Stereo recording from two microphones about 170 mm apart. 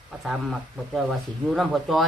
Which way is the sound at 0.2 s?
Centre (ahead or behind).